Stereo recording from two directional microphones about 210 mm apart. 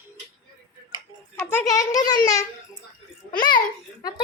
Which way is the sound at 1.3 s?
10° left (ahead or behind).